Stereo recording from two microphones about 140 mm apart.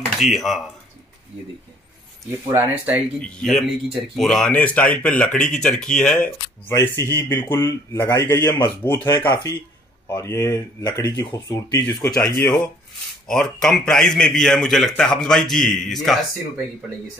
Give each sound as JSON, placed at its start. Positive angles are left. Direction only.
{"t": 0.2, "sound": "a man's voice", "side_deg": 0}
{"t": 2.4, "sound": "speech", "side_deg": -20}
{"t": 3.2, "sound": "a man's voice", "side_deg": 5}
{"t": 9.1, "sound": "a man's voice", "side_deg": 30}
{"t": 12.2, "sound": "speech", "side_deg": 15}
{"t": 13.3, "sound": "a man's voice", "side_deg": 5}